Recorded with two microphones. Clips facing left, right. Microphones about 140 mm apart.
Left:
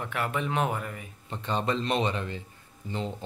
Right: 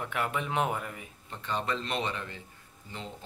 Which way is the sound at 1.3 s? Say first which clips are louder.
Left 4 dB; 25° left (ahead or behind).